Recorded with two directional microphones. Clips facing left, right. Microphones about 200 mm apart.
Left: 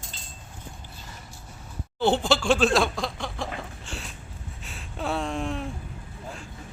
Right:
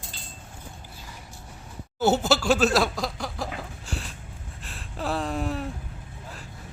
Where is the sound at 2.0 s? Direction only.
5° right (ahead or behind).